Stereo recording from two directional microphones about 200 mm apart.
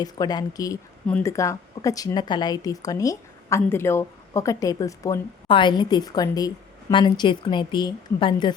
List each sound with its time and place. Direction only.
0.0 s a woman's voice: 20° left (ahead or behind)